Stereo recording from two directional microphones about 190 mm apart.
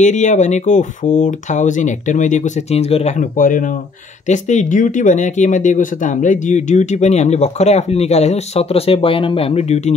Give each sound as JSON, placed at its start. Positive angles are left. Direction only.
{"t": 0.0, "sound": "speech", "side_deg": 40}